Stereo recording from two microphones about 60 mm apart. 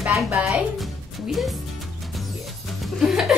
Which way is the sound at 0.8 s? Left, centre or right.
Centre.